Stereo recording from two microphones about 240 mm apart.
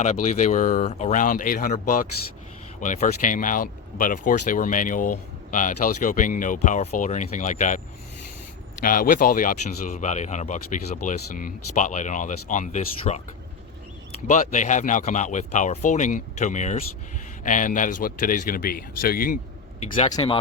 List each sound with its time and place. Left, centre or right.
0.0 s speech: left
8.8 s speech: left
14.3 s speech: left
20.1 s speech: centre